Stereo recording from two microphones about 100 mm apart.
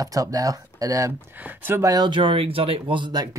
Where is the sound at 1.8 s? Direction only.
45° right (ahead or behind).